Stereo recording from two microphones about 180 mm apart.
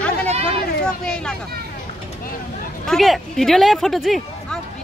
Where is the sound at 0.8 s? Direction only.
5° left (ahead or behind).